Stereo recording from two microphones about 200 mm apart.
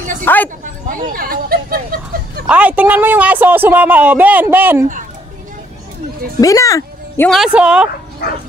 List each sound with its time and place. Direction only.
0.2 s a sound: 10° left (ahead or behind)
0.8 s speech: 45° right (ahead or behind)
2.4 s speech: 5° right (ahead or behind)
6.4 s speech: 15° left (ahead or behind)
7.2 s speech: centre (ahead or behind)
8.2 s bow-wow: 55° left (ahead or behind)